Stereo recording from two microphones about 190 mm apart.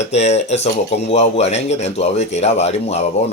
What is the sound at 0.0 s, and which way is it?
Speech, 35° left (ahead or behind).